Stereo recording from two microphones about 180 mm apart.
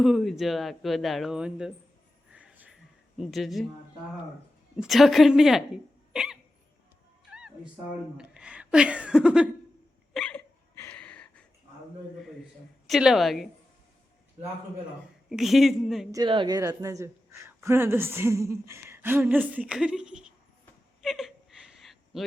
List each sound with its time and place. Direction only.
0.0 s speech: centre (ahead or behind)
2.3 s a sound: 5° right (ahead or behind)
3.2 s speech: centre (ahead or behind)
4.8 s speech: centre (ahead or behind)
7.3 s cat: 5° right (ahead or behind)
8.2 s speech: 5° right (ahead or behind)
10.2 s hiccup: 5° left (ahead or behind)
12.9 s speech: centre (ahead or behind)
15.3 s speech: centre (ahead or behind)
16.1 s a woman's voice: 25° right (ahead or behind); by 20.3 s 5° right (ahead or behind)
21.0 s a sound: centre (ahead or behind)